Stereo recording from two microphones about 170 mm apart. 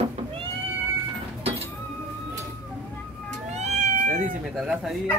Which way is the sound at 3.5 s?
45° right (ahead or behind).